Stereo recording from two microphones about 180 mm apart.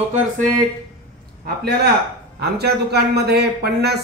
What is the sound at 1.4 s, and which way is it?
A man's voice, 65° right (ahead or behind).